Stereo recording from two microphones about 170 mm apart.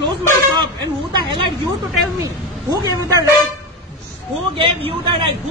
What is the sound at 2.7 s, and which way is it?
Speech, 20° right (ahead or behind).